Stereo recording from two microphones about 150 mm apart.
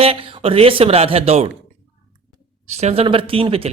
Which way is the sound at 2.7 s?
45° right (ahead or behind).